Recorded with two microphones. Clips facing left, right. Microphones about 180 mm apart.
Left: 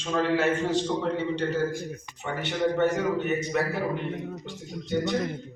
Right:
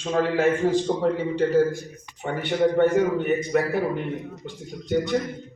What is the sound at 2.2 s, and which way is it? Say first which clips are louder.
A man's voice: right 5 dB; 50° right (ahead or behind).